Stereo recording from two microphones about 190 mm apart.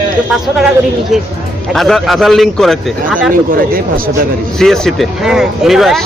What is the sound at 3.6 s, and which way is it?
Speech, 50° right (ahead or behind).